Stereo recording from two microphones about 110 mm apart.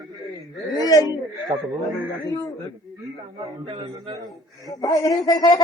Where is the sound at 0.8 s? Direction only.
35° left (ahead or behind).